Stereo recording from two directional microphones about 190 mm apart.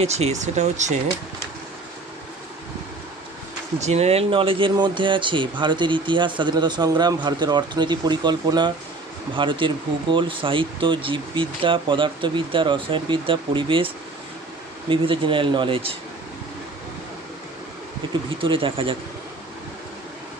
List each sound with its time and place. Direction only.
0.0 s speech: 35° right (ahead or behind)
3.8 s speech: 35° right (ahead or behind)
18.3 s speech: 25° right (ahead or behind)